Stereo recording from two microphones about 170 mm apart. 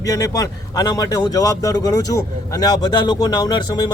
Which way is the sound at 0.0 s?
20° left (ahead or behind).